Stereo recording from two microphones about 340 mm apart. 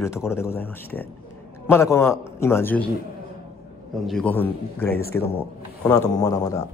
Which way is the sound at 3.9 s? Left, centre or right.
Centre.